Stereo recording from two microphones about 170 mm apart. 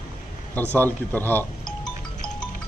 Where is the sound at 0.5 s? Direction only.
10° left (ahead or behind).